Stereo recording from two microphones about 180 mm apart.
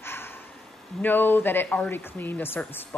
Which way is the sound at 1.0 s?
10° left (ahead or behind).